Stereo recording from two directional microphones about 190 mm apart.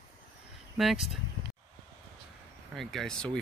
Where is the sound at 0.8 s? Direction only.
Centre (ahead or behind).